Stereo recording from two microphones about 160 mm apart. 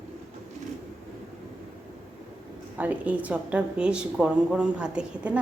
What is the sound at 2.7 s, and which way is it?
A woman's voice, 10° right (ahead or behind).